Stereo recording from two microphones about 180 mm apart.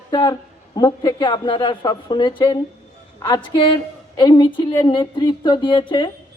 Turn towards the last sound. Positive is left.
turn(degrees=25)  # may be behind; listen again after turning